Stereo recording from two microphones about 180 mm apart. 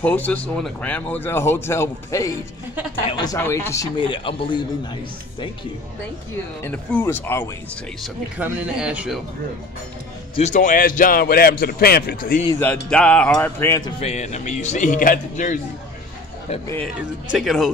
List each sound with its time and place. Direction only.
0.0 s a man's voice: 10° left (ahead or behind); by 3.3 s 25° left (ahead or behind)
3.3 s a man's voice: 15° left (ahead or behind)
6.6 s speech: 10° left (ahead or behind)
8.0 s speech: 10° right (ahead or behind)
10.3 s speech: 40° left (ahead or behind)
12.9 s speech: 5° left (ahead or behind)
14.0 s speech: 40° left (ahead or behind)
16.8 s speech: 5° right (ahead or behind)